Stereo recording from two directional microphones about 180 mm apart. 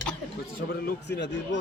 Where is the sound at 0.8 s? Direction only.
70° left (ahead or behind).